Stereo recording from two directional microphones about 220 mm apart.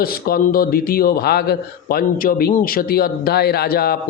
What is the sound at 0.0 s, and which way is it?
A man's voice, 40° left (ahead or behind).